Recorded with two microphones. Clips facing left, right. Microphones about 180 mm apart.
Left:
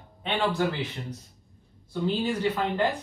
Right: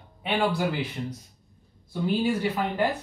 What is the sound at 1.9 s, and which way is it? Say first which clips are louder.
Speech: right 2 dB; 10° right (ahead or behind).